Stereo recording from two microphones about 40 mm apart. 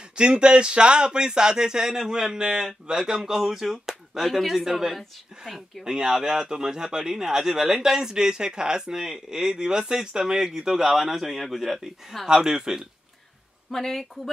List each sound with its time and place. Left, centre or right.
0.1 s speech: right
13.7 s speech: centre